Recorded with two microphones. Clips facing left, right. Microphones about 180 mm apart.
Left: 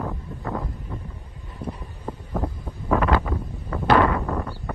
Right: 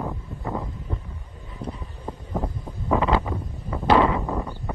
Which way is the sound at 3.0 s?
25° right (ahead or behind).